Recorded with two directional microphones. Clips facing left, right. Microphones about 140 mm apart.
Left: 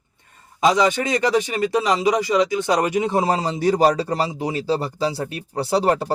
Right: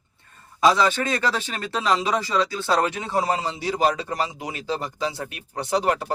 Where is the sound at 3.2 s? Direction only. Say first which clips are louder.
Left 5 dB; 40° left (ahead or behind).